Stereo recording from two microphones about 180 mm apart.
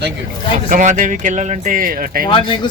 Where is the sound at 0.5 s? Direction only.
45° right (ahead or behind).